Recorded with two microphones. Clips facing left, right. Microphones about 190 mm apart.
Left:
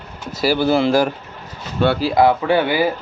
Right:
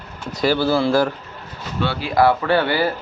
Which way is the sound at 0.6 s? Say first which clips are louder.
Left 3 dB; 20° left (ahead or behind).